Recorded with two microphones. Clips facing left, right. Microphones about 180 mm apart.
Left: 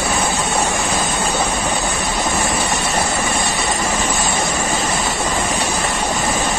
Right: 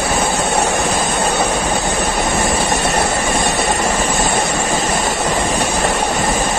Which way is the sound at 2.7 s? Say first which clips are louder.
Right 3 dB; 65° right (ahead or behind).